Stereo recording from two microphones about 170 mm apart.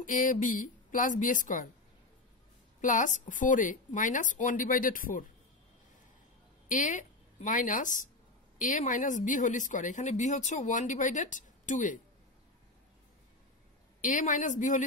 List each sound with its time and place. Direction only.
0.0 s speech: 50° left (ahead or behind)
2.8 s speech: 50° left (ahead or behind)
6.7 s a woman's voice: 50° left (ahead or behind)
14.0 s speech: 50° left (ahead or behind)